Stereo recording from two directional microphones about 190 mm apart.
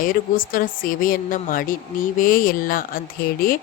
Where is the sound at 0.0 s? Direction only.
45° left (ahead or behind).